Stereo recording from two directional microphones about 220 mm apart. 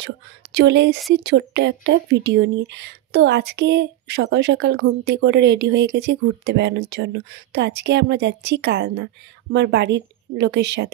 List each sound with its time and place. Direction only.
0.0 s speech: 50° right (ahead or behind)